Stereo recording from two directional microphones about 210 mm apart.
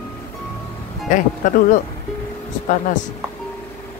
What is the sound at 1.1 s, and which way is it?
Speech, 40° left (ahead or behind).